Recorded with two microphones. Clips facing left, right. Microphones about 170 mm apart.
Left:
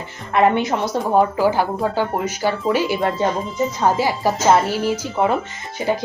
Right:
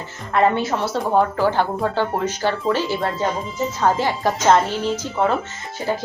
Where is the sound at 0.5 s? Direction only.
15° left (ahead or behind).